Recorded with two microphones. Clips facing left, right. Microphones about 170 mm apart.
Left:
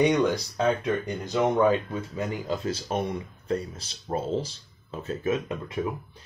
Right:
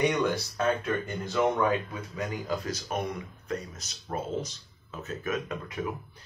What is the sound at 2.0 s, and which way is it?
Speech, 25° left (ahead or behind).